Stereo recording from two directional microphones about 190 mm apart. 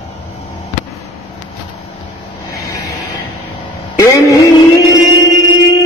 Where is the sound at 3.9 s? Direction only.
15° left (ahead or behind).